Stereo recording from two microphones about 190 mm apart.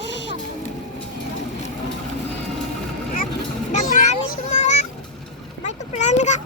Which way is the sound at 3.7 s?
40° left (ahead or behind).